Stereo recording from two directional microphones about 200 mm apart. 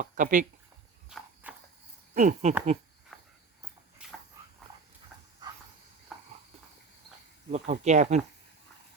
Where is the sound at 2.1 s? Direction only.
40° right (ahead or behind).